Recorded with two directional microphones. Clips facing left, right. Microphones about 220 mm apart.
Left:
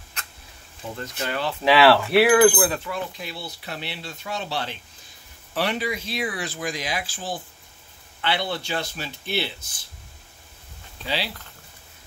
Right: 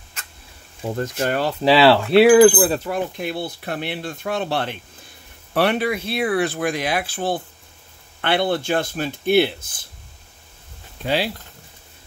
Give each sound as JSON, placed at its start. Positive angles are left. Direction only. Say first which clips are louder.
{"t": 0.9, "sound": "speech", "louder": "right 7 dB", "side_deg": -50}
{"t": 2.7, "sound": "speech", "louder": "right 6 dB", "side_deg": -40}
{"t": 3.2, "sound": "speech", "louder": "right 9 dB", "side_deg": -55}
{"t": 11.1, "sound": "speech", "louder": "right 7 dB", "side_deg": -50}